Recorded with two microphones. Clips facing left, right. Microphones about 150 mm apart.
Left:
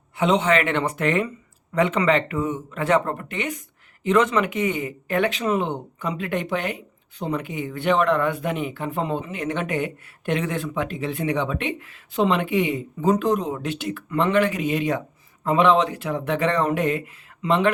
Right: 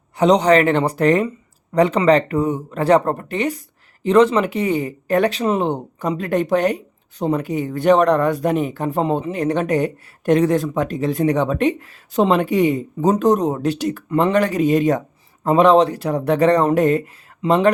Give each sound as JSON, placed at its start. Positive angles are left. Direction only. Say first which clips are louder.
{"t": 0.2, "sound": "speech", "louder": "right 6 dB", "side_deg": -40}